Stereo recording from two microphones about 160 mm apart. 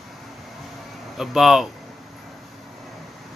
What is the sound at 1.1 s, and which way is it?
Speech, centre (ahead or behind).